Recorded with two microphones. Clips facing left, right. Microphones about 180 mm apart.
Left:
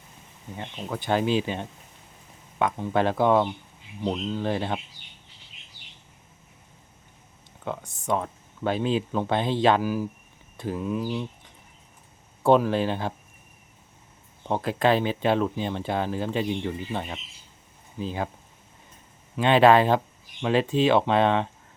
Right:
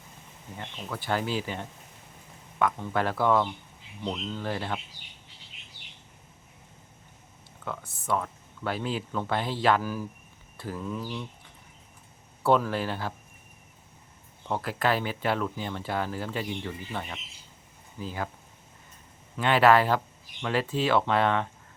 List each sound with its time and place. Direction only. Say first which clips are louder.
0.5 s speech: left 4 dB; 20° left (ahead or behind)
8.0 s speech: left 3 dB; 20° left (ahead or behind)
12.5 s speech: left 5 dB; 20° left (ahead or behind)
14.4 s speech: left 5 dB; 25° left (ahead or behind)
19.4 s speech: left 3 dB; 20° left (ahead or behind)